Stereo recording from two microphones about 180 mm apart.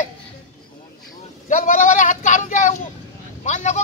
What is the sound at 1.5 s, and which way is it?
A woman's voice, 45° left (ahead or behind).